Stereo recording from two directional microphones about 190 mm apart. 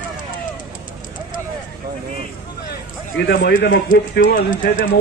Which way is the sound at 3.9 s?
45° left (ahead or behind).